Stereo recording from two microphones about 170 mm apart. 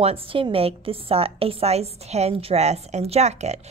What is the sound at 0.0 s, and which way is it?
A woman's voice, 35° right (ahead or behind).